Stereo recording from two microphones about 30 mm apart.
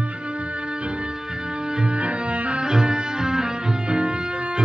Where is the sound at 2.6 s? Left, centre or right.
Right.